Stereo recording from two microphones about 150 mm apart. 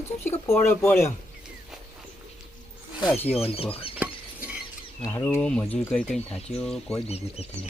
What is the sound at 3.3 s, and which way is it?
Speech, 40° left (ahead or behind).